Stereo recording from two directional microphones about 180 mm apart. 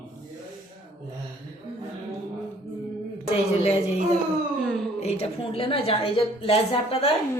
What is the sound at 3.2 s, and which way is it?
Speech, 35° left (ahead or behind).